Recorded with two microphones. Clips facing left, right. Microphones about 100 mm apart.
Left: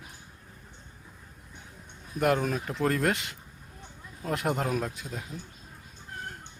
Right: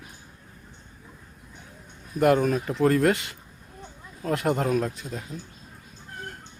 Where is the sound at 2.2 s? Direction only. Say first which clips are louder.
Right 5 dB; centre (ahead or behind).